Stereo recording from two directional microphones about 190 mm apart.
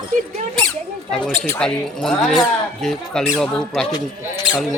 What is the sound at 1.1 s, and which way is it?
Speech, 5° left (ahead or behind).